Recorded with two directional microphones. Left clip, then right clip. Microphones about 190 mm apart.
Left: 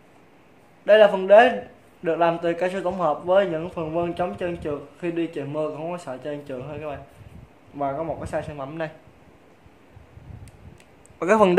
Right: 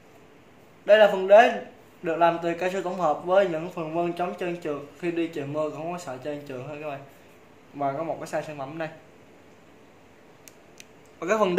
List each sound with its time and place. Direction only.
0.8 s a man's voice: 40° left (ahead or behind)
11.1 s speech: 65° left (ahead or behind)